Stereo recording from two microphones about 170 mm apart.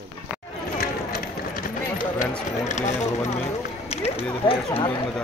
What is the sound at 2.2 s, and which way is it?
Speech, 45° left (ahead or behind).